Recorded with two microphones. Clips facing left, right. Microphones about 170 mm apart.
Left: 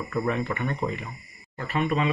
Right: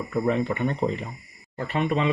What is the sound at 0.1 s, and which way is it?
Speech, 20° right (ahead or behind).